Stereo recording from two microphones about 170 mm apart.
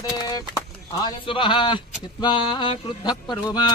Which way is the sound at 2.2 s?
25° left (ahead or behind).